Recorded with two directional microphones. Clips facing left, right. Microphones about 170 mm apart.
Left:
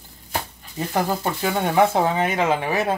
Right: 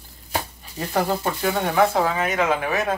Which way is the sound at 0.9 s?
10° left (ahead or behind).